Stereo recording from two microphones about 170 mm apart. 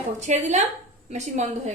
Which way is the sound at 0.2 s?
45° right (ahead or behind).